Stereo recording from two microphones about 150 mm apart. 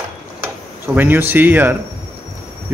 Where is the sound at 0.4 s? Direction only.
15° right (ahead or behind).